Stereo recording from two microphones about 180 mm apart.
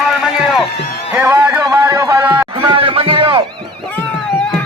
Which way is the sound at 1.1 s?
15° right (ahead or behind).